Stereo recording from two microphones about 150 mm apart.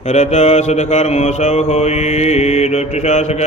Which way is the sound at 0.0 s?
45° left (ahead or behind).